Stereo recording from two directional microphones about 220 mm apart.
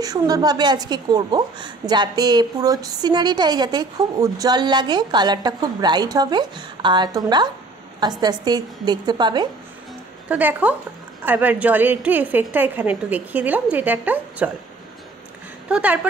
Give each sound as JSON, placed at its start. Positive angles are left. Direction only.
{"t": 0.0, "sound": "a woman's voice", "side_deg": -15}
{"t": 10.2, "sound": "a woman's voice", "side_deg": -5}
{"t": 15.7, "sound": "a woman's voice", "side_deg": -5}